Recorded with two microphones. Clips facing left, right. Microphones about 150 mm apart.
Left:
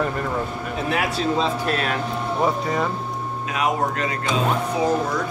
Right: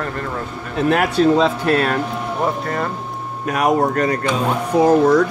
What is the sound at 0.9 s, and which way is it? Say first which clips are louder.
Speech: right 8 dB; 55° right (ahead or behind).